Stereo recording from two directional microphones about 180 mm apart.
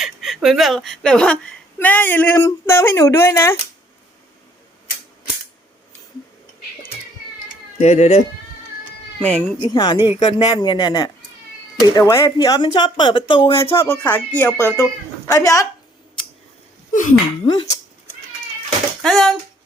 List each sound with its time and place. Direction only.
0.0 s a woman's voice: centre (ahead or behind); by 3.6 s 15° left (ahead or behind)
7.4 s cat: 40° left (ahead or behind)
9.2 s a woman's voice: 10° left (ahead or behind)
9.7 s speech: 25° left (ahead or behind)
13.8 s a woman's voice: 10° left (ahead or behind)
16.9 s speech: 45° left (ahead or behind)
17.4 s speech: 25° left (ahead or behind)
19.0 s speech: centre (ahead or behind)